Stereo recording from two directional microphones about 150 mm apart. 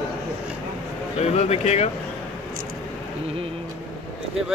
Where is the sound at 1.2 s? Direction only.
45° left (ahead or behind).